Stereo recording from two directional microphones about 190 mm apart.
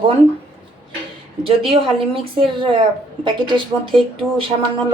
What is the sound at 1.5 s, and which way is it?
Speech, 30° right (ahead or behind).